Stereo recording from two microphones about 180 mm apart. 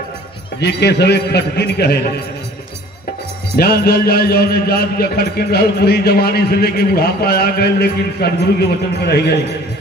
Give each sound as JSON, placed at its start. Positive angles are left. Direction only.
{"t": 0.6, "sound": "a man's voice", "side_deg": 70}
{"t": 3.5, "sound": "a man's voice", "side_deg": 60}